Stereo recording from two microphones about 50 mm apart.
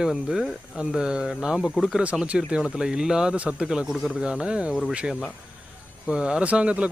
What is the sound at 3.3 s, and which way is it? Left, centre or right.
Speech, right.